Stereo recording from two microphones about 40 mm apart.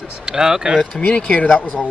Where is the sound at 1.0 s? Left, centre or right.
Left.